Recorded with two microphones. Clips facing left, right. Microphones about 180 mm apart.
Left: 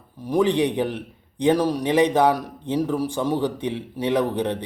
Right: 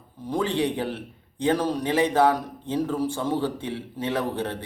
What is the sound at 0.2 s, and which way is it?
A man's voice, 15° left (ahead or behind).